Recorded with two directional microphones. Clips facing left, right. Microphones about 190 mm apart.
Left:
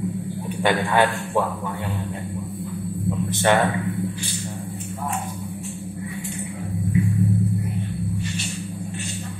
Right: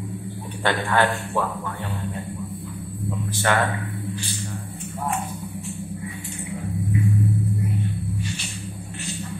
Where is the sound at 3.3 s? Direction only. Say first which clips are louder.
Left 4 dB; 20° left (ahead or behind).